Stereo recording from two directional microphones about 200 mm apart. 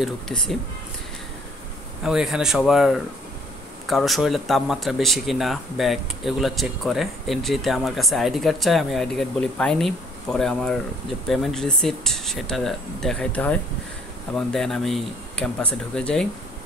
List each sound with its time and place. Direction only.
0.0 s speech: centre (ahead or behind)
2.0 s speech: 5° right (ahead or behind)